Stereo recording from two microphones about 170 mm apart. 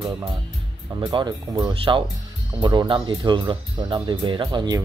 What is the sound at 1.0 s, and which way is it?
Speech, 25° right (ahead or behind).